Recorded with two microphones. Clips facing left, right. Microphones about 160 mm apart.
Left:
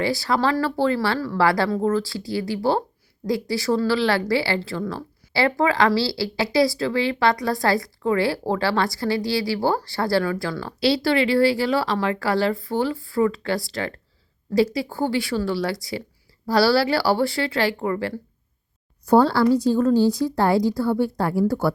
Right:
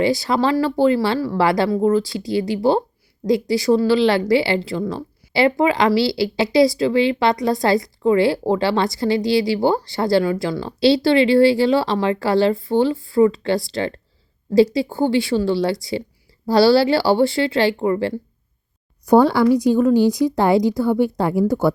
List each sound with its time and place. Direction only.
0.0 s a woman's voice: 20° right (ahead or behind)